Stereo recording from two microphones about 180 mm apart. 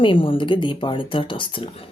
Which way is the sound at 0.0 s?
30° left (ahead or behind).